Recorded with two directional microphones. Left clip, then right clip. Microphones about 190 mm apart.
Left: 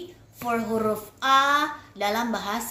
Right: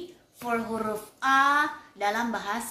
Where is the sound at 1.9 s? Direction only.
50° left (ahead or behind).